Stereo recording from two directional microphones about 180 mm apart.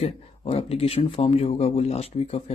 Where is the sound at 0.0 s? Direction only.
35° left (ahead or behind).